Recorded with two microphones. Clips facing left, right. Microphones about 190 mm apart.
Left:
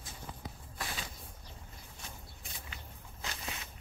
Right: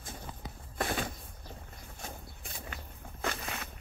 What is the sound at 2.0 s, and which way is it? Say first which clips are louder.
Walk: right 7 dB; 50° right (ahead or behind).